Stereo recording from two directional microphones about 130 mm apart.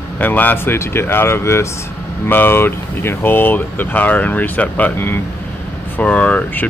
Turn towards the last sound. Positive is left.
turn(degrees=10)  # may be behind; listen again after turning